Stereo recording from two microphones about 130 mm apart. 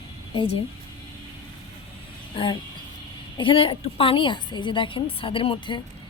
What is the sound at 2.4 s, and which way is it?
A woman's voice, 40° left (ahead or behind).